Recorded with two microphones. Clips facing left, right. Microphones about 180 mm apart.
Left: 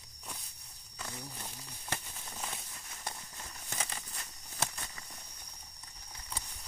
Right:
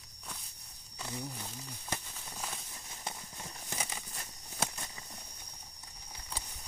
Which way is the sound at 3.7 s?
10° right (ahead or behind).